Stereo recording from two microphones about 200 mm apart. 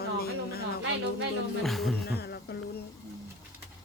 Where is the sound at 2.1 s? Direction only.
55° left (ahead or behind).